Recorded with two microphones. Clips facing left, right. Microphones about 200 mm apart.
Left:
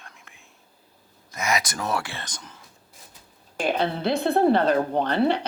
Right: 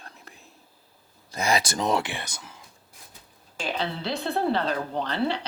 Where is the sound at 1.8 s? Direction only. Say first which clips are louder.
Right 3 dB; 20° right (ahead or behind).